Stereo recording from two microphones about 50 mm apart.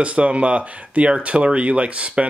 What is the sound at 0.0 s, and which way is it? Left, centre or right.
Speech, right.